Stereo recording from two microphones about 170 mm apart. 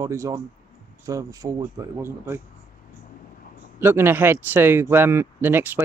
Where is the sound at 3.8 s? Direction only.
15° right (ahead or behind).